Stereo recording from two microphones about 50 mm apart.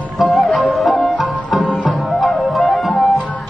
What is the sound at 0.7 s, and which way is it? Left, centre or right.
Music, centre.